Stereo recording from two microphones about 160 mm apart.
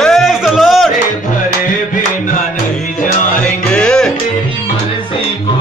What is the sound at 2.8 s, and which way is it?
Music, 55° left (ahead or behind).